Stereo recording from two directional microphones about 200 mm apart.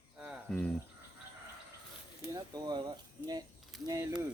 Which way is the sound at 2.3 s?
20° right (ahead or behind).